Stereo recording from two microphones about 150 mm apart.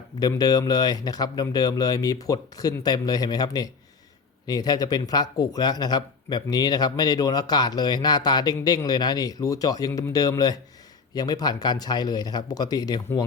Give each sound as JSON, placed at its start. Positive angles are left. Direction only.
{"t": 0.2, "sound": "speech", "side_deg": 25}